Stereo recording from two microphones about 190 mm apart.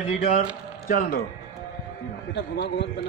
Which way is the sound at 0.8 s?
45° left (ahead or behind).